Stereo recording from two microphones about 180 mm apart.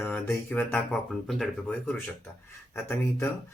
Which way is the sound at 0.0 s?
10° left (ahead or behind).